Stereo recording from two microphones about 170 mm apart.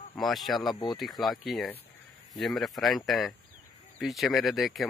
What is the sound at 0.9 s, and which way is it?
Speech, centre (ahead or behind).